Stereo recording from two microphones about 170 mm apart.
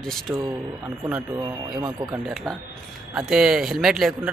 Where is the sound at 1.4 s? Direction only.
25° right (ahead or behind).